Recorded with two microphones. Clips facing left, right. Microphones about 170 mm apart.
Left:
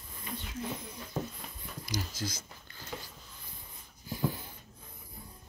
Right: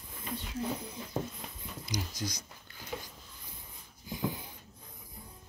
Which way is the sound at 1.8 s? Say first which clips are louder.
Even; 15° right (ahead or behind).